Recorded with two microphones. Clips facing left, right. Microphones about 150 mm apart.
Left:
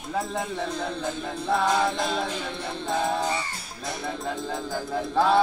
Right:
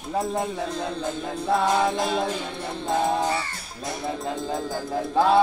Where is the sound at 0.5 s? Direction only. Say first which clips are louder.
Right 1 dB; 5° right (ahead or behind).